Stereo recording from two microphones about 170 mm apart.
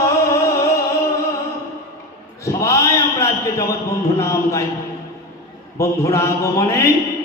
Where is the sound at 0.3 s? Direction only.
20° left (ahead or behind).